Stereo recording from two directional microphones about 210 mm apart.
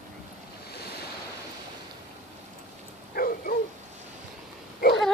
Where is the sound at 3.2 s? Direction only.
45° left (ahead or behind).